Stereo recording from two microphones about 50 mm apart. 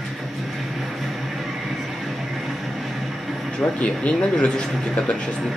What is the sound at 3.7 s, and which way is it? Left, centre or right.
Speech, left.